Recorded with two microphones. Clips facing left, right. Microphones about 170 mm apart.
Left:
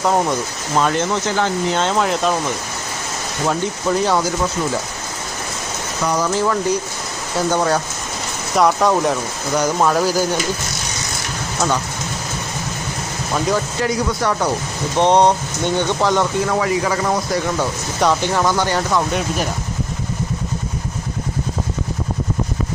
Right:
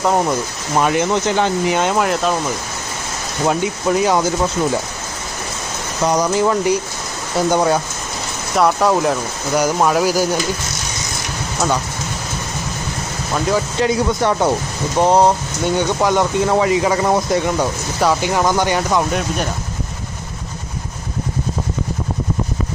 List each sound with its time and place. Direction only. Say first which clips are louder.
0.0 s speech: right 1 dB; centre (ahead or behind)
0.8 s speech: right 2 dB; 10° right (ahead or behind)
3.4 s speech: right 2 dB; 15° right (ahead or behind)
6.1 s speech: right 3 dB; 15° right (ahead or behind)
13.7 s speech: right 3 dB; 25° right (ahead or behind)
14.9 s speech: right 1 dB; 5° right (ahead or behind)
16.5 s speech: right 3 dB; 25° right (ahead or behind)
18.0 s speech: right 1 dB; 10° right (ahead or behind)